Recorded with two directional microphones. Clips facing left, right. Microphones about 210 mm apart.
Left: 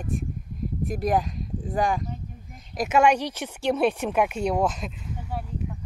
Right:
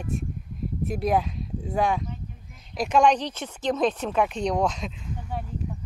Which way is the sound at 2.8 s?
5° left (ahead or behind).